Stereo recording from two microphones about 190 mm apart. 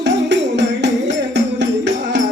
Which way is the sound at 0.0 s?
70° right (ahead or behind).